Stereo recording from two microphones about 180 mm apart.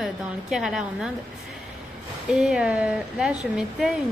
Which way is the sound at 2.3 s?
5° right (ahead or behind).